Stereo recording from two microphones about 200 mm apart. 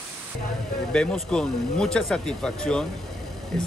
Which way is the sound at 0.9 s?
5° left (ahead or behind).